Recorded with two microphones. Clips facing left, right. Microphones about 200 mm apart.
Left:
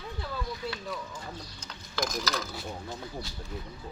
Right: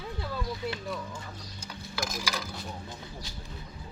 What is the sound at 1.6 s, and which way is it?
Stir, 10° right (ahead or behind).